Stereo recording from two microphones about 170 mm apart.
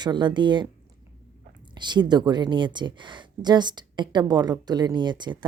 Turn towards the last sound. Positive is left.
turn(degrees=-25)  # may be behind; listen again after turning